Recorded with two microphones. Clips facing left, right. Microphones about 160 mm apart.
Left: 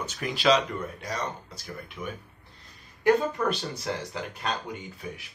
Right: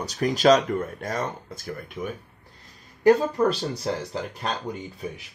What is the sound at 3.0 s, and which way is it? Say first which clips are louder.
Speech: right 5 dB; 35° right (ahead or behind).